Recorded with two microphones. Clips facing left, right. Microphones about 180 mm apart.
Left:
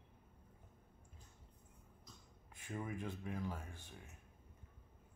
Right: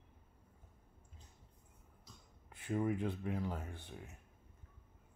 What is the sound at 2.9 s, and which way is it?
Speech, 15° right (ahead or behind).